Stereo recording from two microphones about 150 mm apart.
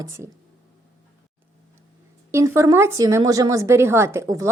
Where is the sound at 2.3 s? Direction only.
20° right (ahead or behind).